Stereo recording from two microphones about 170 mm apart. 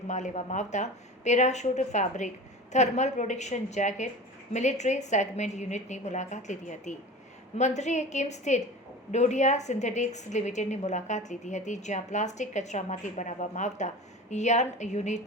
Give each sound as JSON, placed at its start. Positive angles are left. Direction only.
{"t": 0.1, "sound": "a woman's voice", "side_deg": 45}